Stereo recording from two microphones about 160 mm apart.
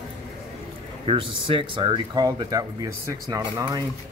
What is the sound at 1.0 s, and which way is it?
Speech, 35° right (ahead or behind).